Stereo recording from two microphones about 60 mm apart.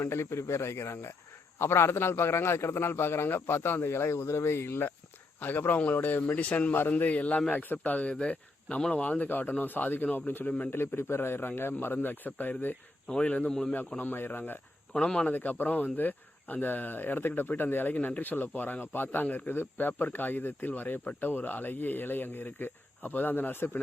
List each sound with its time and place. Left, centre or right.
0.0 s a man's voice: left
10.7 s speech: left
13.1 s speech: centre
13.5 s a man's voice: centre
14.0 s speech: left
14.9 s a man's voice: centre
15.3 s speech: left